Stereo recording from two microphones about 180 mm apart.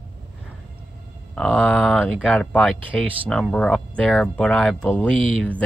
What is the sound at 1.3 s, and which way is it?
Speech, 5° left (ahead or behind).